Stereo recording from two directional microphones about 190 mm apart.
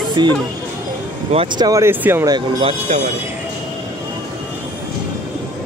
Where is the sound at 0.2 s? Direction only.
25° right (ahead or behind).